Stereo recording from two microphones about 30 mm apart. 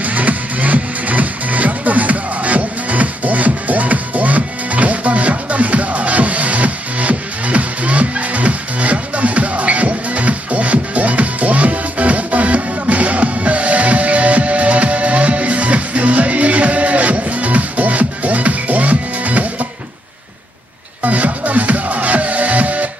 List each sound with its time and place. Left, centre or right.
0.0 s music: right
21.0 s music: right